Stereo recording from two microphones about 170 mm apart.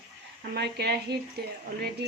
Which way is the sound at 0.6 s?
70° right (ahead or behind).